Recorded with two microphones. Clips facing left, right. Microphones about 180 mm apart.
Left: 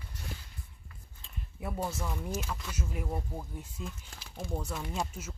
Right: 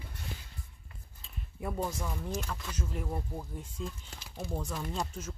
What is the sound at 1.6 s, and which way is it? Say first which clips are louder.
Speech: right 1 dB; 5° left (ahead or behind).